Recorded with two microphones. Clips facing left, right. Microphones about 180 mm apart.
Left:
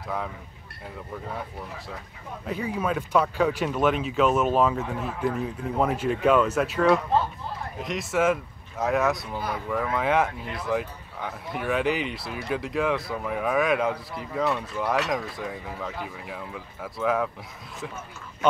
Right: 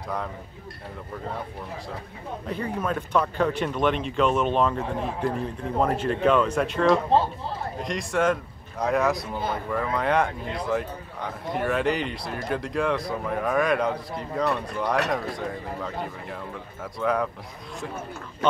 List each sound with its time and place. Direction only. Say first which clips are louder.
2.4 s speech: left 1 dB; 5° left (ahead or behind)